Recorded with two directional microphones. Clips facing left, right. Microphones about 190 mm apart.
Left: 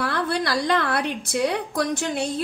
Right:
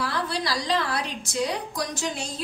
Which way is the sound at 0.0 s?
55° left (ahead or behind).